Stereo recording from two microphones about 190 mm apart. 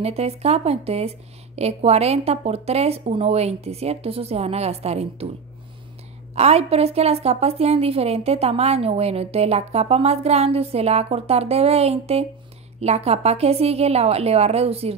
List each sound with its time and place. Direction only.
0.0 s a woman's voice: 35° right (ahead or behind)
6.3 s a woman's voice: 35° right (ahead or behind)